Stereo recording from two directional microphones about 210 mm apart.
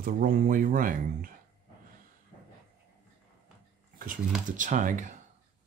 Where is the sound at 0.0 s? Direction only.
40° right (ahead or behind).